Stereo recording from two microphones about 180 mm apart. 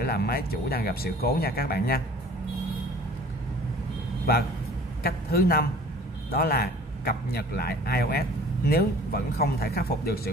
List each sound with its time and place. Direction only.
0.0 s a man's voice: 60° left (ahead or behind)
5.0 s a man's voice: 55° left (ahead or behind)